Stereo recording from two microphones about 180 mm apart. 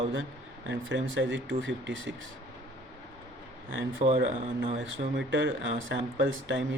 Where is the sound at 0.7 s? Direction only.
90° right.